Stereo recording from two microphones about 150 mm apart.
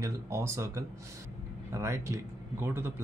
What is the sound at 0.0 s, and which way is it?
Speech, 20° right (ahead or behind).